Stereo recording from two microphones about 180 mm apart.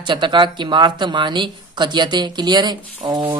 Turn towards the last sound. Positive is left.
turn(degrees=-25)  # may be behind; listen again after turning